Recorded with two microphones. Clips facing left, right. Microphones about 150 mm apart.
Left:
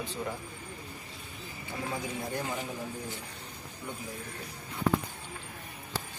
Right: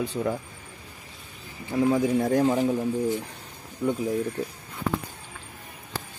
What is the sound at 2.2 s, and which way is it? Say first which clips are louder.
Speech: right 13 dB; 90° right.